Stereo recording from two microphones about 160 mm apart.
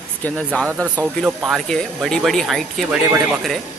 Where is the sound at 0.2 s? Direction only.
5° left (ahead or behind).